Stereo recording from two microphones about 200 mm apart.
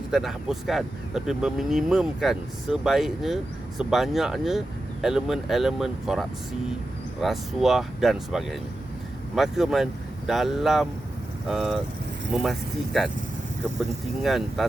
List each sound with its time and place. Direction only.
0.1 s speech: centre (ahead or behind)
14.2 s speech: centre (ahead or behind)